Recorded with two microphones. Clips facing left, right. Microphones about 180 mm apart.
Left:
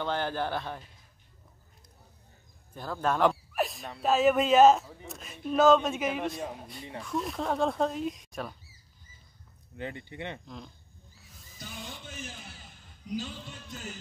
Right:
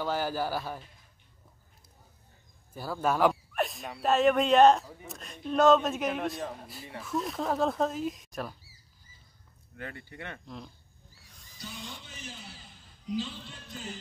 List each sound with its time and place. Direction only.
0.0 s speech: 5° right (ahead or behind)
2.7 s speech: 5° right (ahead or behind)
9.8 s speech: 20° left (ahead or behind)
10.4 s speech: centre (ahead or behind)
11.2 s music: centre (ahead or behind)
13.1 s music: 45° left (ahead or behind)